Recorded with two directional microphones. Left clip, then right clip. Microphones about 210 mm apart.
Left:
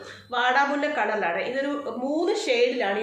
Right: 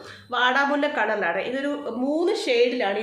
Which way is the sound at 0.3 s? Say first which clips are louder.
Right 1 dB; 40° right (ahead or behind).